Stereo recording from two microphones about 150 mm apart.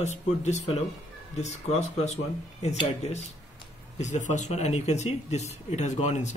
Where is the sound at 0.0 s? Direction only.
50° left (ahead or behind).